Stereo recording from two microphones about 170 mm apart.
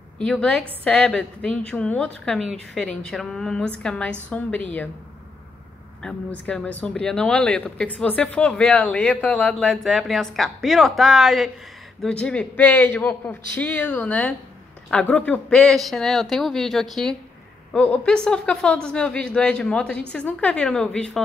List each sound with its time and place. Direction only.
0.2 s a man's voice: 5° left (ahead or behind)
6.0 s a man's voice: 5° left (ahead or behind)